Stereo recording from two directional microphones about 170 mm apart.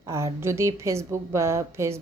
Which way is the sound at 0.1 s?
15° right (ahead or behind).